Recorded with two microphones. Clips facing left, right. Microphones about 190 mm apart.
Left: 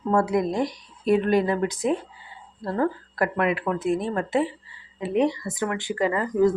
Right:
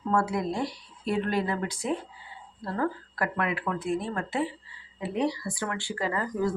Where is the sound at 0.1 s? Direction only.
20° left (ahead or behind).